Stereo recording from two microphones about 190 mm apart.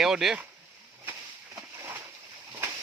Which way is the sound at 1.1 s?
15° right (ahead or behind).